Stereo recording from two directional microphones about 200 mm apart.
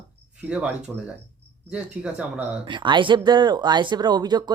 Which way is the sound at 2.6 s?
25° right (ahead or behind).